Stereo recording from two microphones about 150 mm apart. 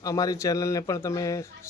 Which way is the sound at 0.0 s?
25° left (ahead or behind).